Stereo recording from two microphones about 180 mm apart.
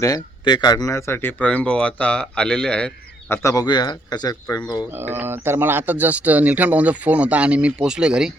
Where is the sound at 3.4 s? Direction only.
20° left (ahead or behind).